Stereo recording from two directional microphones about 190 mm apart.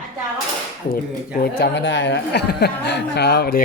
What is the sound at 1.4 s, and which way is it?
Speech, 60° left (ahead or behind).